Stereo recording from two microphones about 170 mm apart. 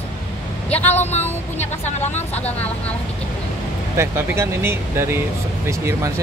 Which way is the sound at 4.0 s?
15° right (ahead or behind).